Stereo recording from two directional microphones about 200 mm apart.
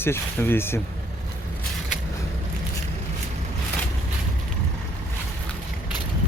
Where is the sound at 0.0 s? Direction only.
10° left (ahead or behind).